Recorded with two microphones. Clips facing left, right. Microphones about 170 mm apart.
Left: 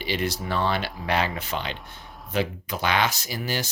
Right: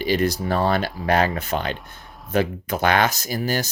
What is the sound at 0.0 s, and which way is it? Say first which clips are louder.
Speech: right 7 dB; 45° right (ahead or behind).